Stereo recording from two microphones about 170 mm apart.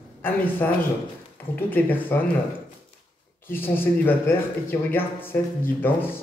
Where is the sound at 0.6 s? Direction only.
10° left (ahead or behind).